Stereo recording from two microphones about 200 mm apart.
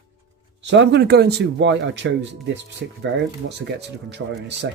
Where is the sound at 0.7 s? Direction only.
60° right (ahead or behind).